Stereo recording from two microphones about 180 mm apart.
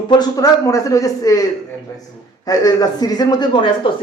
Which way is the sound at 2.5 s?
20° left (ahead or behind).